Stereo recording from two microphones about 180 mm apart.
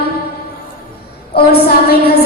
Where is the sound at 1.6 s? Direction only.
60° left (ahead or behind).